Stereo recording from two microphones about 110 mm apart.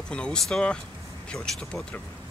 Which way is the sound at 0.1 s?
10° left (ahead or behind).